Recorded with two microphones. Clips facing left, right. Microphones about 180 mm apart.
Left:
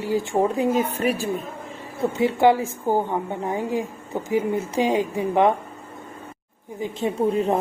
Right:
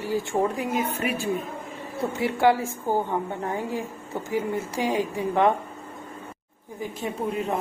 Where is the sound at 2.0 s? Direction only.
20° left (ahead or behind).